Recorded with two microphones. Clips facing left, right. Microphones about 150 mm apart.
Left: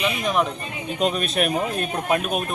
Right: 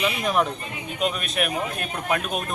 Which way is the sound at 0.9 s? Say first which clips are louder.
Left 3 dB; 35° left (ahead or behind).